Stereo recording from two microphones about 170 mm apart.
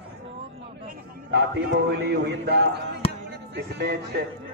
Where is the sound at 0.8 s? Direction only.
70° right (ahead or behind).